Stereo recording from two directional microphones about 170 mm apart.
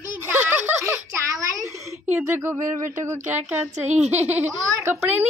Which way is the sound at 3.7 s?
40° right (ahead or behind).